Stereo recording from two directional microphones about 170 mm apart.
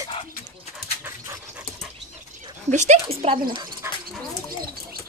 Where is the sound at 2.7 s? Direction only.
45° right (ahead or behind).